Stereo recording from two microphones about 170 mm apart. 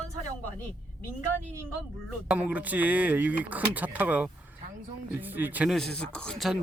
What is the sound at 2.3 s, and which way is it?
Speech, 10° right (ahead or behind).